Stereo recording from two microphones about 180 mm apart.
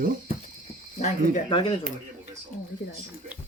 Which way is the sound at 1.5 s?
25° left (ahead or behind).